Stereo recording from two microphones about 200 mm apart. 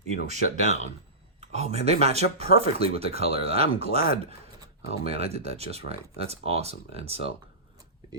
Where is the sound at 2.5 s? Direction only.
45° left (ahead or behind).